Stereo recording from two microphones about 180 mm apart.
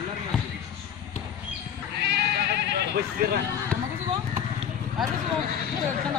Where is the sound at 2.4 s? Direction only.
60° right (ahead or behind).